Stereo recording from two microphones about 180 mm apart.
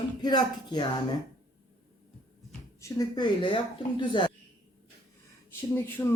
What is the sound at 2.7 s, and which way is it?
Speech, 20° left (ahead or behind).